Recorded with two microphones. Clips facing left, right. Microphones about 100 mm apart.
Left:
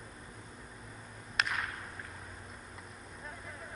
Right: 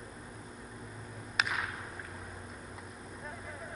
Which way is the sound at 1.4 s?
Centre (ahead or behind).